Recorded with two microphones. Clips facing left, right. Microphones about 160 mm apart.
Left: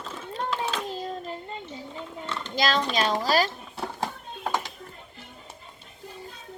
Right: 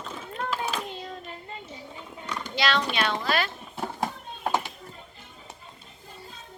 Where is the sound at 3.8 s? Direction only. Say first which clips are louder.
Right 1 dB; 15° right (ahead or behind).